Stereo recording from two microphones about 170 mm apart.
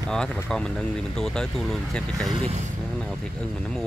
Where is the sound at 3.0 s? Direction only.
5° left (ahead or behind).